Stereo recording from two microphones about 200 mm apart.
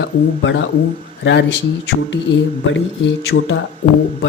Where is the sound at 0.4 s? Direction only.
70° left (ahead or behind).